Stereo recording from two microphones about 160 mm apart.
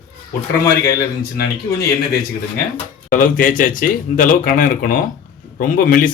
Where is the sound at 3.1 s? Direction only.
60° left (ahead or behind).